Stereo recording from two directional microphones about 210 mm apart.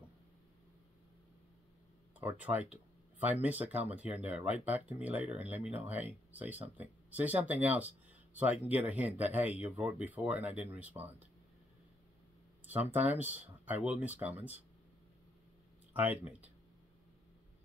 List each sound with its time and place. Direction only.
2.1 s speech: 10° right (ahead or behind)
12.6 s speech: 10° right (ahead or behind)
15.9 s speech: 10° right (ahead or behind)